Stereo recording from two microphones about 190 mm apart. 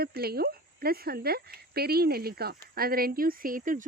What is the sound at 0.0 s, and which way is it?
Speech, 55° right (ahead or behind).